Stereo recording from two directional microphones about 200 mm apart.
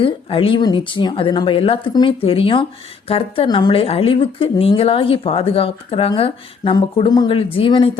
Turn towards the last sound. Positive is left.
turn(degrees=25)  # may be behind; listen again after turning